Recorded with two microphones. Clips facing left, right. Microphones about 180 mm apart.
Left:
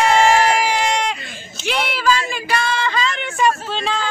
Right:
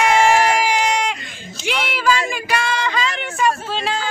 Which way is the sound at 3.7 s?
5° right (ahead or behind).